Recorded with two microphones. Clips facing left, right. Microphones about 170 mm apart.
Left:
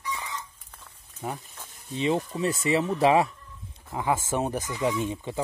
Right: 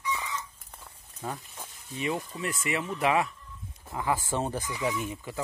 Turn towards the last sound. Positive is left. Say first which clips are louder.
# left 4 dB
turn(degrees=25)  # may be behind; listen again after turning